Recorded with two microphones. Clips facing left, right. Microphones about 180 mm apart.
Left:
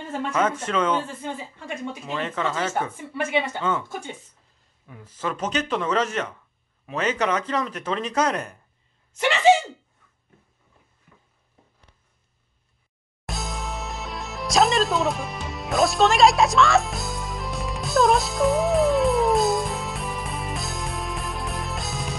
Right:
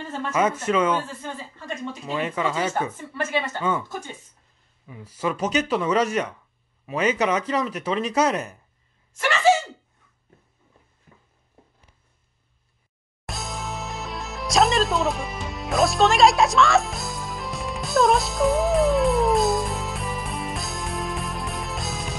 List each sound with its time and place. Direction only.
0.3 s speech: 10° right (ahead or behind)
1.0 s speech: 15° left (ahead or behind)
2.0 s speech: 10° right (ahead or behind)
3.0 s speech: 15° left (ahead or behind)
4.8 s speech: 5° right (ahead or behind)
9.2 s speech: 20° left (ahead or behind)
13.2 s music: centre (ahead or behind)